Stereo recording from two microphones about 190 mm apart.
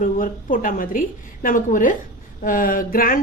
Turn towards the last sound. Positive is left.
turn(degrees=45)  # may be behind; listen again after turning